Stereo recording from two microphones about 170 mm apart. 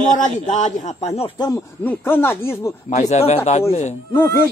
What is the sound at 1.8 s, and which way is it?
Speech, 10° left (ahead or behind).